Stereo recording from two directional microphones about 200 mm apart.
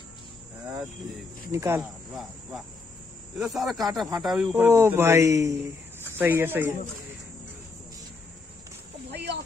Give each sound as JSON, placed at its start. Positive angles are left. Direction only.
{"t": 1.5, "sound": "speech", "side_deg": -15}
{"t": 1.8, "sound": "speech", "side_deg": 0}
{"t": 4.6, "sound": "speech", "side_deg": -15}
{"t": 9.1, "sound": "a sound", "side_deg": -55}